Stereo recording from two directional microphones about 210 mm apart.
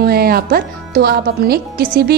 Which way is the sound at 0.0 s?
45° right (ahead or behind).